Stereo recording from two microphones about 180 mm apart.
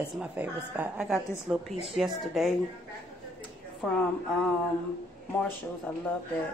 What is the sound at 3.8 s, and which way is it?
Speech, centre (ahead or behind).